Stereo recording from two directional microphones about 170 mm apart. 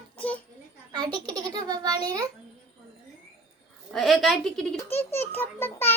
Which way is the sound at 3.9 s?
Centre (ahead or behind).